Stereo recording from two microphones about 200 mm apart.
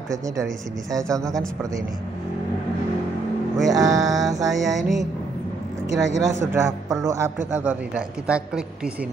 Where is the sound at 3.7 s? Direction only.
20° right (ahead or behind).